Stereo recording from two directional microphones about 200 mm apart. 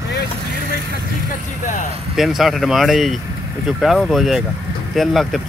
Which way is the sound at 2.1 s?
Centre (ahead or behind).